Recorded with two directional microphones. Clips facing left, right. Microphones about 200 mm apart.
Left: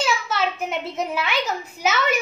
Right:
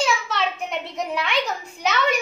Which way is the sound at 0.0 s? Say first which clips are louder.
Even; 5° left (ahead or behind).